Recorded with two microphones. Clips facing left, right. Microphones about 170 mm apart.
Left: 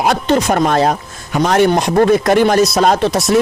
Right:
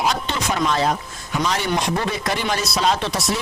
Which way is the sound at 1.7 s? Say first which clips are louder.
Left 11 dB; 45° left (ahead or behind).